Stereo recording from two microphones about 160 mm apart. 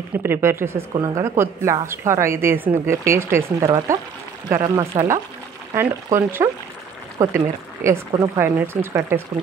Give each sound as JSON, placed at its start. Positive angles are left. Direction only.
{"t": 0.1, "sound": "speech", "side_deg": -15}